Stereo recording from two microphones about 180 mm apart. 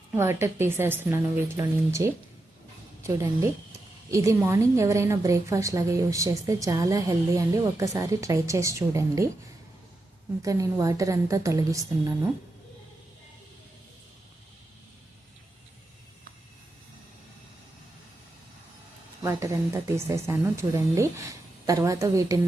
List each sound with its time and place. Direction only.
0.2 s a woman's voice: 15° right (ahead or behind)
10.4 s a woman's voice: 15° right (ahead or behind)
19.2 s a woman's voice: 15° right (ahead or behind)